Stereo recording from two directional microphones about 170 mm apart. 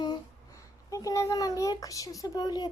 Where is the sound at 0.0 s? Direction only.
20° left (ahead or behind).